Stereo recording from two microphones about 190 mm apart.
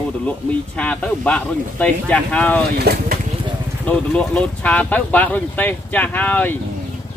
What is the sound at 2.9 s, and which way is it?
Speech, 55° right (ahead or behind).